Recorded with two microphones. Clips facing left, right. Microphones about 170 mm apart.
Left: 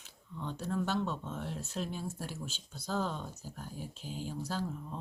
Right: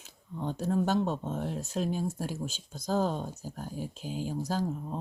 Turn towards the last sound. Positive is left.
turn(degrees=-40)  # may be behind; listen again after turning